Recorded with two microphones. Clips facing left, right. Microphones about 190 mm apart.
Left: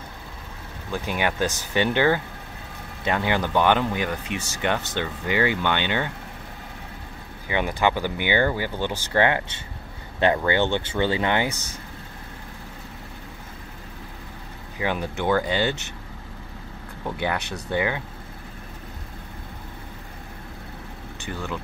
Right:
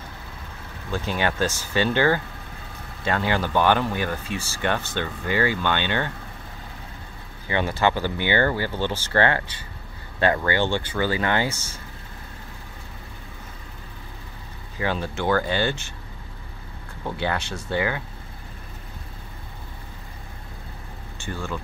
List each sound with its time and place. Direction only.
0.9 s speech: 15° left (ahead or behind)
7.4 s speech: 15° left (ahead or behind)
14.8 s speech: 15° left (ahead or behind)
17.0 s speech: 15° left (ahead or behind)